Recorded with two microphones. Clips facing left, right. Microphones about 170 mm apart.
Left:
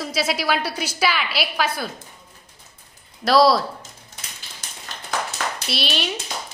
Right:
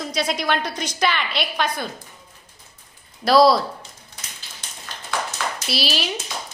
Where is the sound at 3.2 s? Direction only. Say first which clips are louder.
Right 1 dB; centre (ahead or behind).